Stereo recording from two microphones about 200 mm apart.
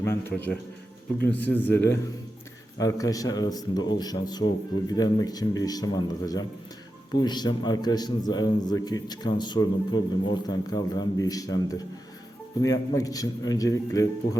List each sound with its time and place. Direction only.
0.0 s a man's voice: 10° left (ahead or behind)